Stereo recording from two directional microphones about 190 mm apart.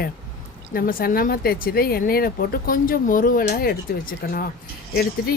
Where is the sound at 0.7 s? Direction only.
50° left (ahead or behind).